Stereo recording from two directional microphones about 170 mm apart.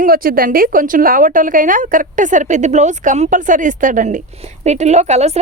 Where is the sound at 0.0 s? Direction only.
60° right (ahead or behind).